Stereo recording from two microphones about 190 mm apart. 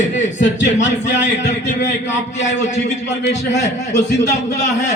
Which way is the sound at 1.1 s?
70° left (ahead or behind).